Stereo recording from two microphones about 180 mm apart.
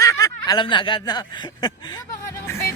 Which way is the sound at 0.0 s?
20° left (ahead or behind).